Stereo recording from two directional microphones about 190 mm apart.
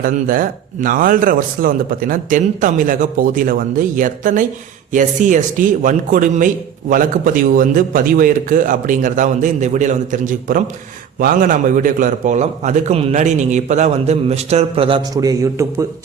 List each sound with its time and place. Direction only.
0.0 s a man's voice: 45° right (ahead or behind); by 15.6 s 20° right (ahead or behind)